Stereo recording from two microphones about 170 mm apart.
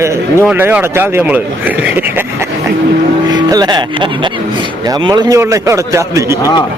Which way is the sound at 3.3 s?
25° right (ahead or behind).